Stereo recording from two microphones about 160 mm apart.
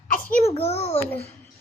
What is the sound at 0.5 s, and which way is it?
Speech, 40° left (ahead or behind).